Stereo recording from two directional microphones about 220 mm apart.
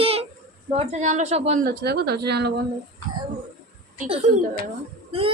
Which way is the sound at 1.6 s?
45° right (ahead or behind).